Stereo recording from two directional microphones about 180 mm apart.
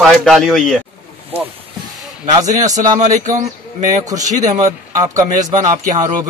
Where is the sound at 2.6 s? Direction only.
20° right (ahead or behind).